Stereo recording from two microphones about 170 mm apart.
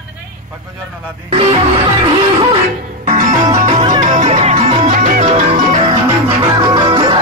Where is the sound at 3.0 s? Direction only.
45° right (ahead or behind).